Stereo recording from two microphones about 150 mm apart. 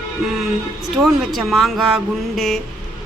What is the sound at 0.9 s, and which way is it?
Speech, centre (ahead or behind).